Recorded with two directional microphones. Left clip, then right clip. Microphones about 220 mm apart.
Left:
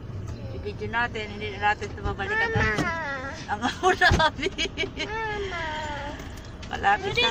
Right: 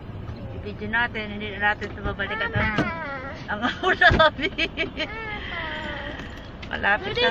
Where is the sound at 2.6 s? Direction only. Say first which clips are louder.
Even; 45° left (ahead or behind).